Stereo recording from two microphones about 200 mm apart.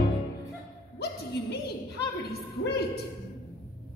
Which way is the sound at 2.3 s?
55° left (ahead or behind).